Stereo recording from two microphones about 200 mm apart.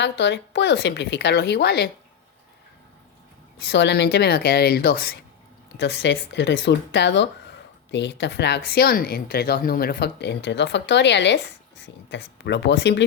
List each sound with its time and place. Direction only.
0.0 s a woman's voice: 60° left (ahead or behind)
3.7 s speech: 60° left (ahead or behind)
5.8 s a woman's voice: 60° left (ahead or behind)